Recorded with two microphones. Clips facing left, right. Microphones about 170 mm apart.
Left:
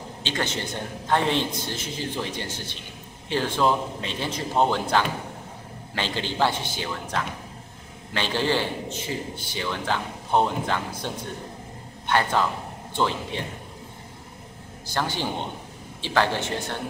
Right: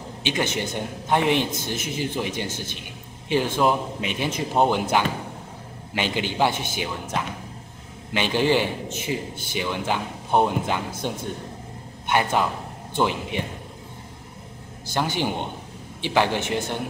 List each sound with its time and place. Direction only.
0.2 s a man's voice: 15° right (ahead or behind)
15.0 s a man's voice: 15° right (ahead or behind)